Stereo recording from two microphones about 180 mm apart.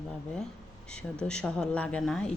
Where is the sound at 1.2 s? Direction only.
5° left (ahead or behind).